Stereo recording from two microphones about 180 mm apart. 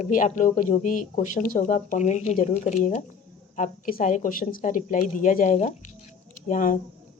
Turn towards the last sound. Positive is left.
turn(degrees=45)  # may be behind; listen again after turning